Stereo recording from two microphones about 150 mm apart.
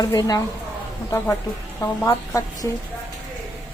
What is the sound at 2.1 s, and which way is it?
Speech, 25° left (ahead or behind).